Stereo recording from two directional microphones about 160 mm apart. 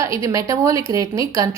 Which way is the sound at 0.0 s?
20° right (ahead or behind).